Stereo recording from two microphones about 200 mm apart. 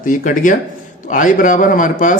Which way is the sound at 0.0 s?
40° left (ahead or behind).